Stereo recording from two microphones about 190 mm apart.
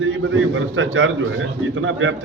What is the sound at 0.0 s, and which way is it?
A man's voice, 90° right.